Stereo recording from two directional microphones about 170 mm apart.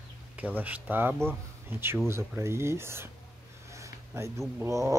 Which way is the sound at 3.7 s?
15° right (ahead or behind).